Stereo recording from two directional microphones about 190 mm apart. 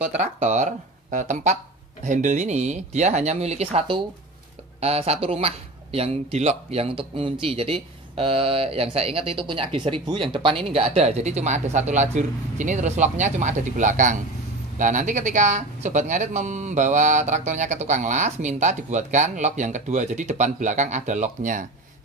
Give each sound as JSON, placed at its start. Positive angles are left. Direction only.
{"t": 0.1, "sound": "speech", "side_deg": -35}